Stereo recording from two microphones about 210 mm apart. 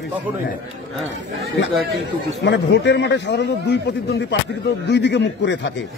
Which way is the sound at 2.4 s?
55° left (ahead or behind).